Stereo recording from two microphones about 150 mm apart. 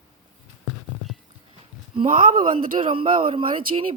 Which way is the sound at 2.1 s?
65° right (ahead or behind).